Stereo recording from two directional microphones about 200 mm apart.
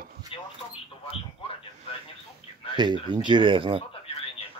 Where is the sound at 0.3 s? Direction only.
25° left (ahead or behind).